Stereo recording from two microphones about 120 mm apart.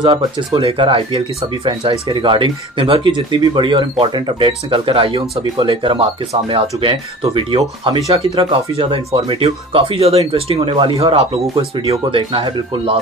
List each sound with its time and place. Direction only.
0.0 s speech: 40° right (ahead or behind)